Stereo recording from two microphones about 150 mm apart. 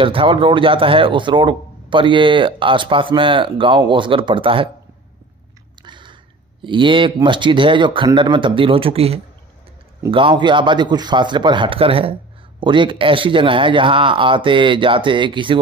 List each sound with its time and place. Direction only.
0.0 s speech: 35° right (ahead or behind)
5.8 s chewing: 30° right (ahead or behind)
6.6 s speech: 35° right (ahead or behind)